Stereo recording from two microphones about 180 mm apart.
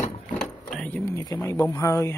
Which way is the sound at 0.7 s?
5° left (ahead or behind).